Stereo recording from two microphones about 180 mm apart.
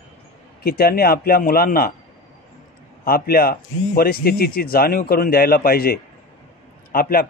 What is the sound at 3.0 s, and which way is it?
Speech, 55° left (ahead or behind).